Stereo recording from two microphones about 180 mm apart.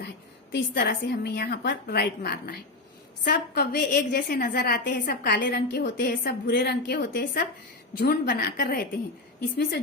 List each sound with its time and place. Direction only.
0.5 s a woman's voice: 70° left (ahead or behind)
4.9 s a woman's voice: 55° left (ahead or behind)
9.6 s a woman's voice: 65° left (ahead or behind)